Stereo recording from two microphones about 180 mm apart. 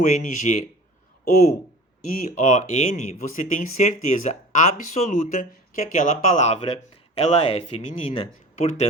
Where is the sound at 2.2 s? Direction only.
45° left (ahead or behind).